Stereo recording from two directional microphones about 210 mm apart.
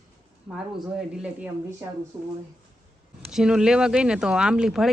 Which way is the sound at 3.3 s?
5° right (ahead or behind).